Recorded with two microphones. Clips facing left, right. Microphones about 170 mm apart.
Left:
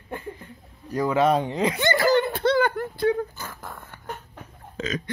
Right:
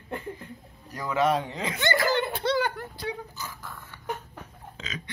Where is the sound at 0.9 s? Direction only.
40° left (ahead or behind).